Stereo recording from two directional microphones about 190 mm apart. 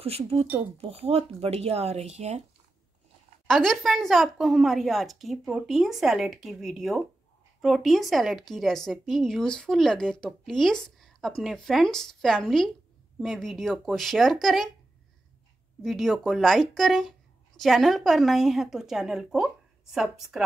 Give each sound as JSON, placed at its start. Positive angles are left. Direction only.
{"t": 0.0, "sound": "speech", "side_deg": -30}
{"t": 3.4, "sound": "speech", "side_deg": 0}
{"t": 15.8, "sound": "speech", "side_deg": 0}